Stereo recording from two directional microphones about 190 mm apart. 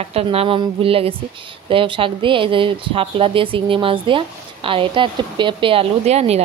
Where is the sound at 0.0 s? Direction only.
30° right (ahead or behind).